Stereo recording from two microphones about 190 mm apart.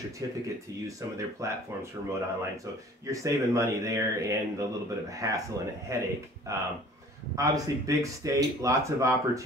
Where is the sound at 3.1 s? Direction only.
15° right (ahead or behind).